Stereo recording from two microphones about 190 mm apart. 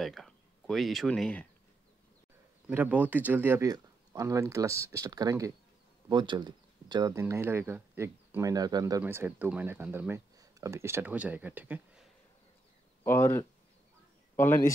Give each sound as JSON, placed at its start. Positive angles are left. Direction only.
{"t": 0.0, "sound": "speech", "side_deg": 0}
{"t": 2.7, "sound": "speech", "side_deg": -10}
{"t": 13.0, "sound": "speech", "side_deg": 15}